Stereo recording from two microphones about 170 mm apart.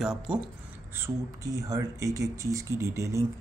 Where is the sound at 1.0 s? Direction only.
20° right (ahead or behind).